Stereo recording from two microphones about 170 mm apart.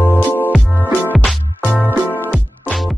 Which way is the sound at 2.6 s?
Centre (ahead or behind).